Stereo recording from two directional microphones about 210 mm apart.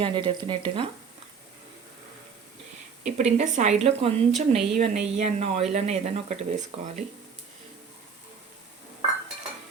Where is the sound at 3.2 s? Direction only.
35° right (ahead or behind).